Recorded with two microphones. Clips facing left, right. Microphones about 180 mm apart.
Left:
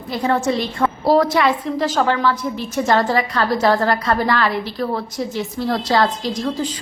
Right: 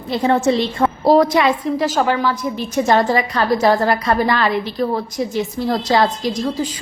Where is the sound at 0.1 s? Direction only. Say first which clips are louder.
Right 3 dB; 25° right (ahead or behind).